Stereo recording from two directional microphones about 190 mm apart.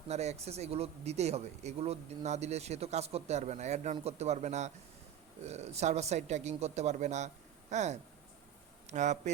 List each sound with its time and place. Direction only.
0.1 s speech: 35° right (ahead or behind)